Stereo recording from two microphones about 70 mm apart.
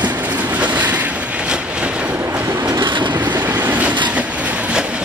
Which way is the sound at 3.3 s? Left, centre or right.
Right.